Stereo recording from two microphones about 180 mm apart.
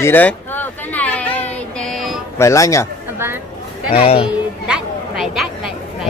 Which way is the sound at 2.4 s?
15° left (ahead or behind).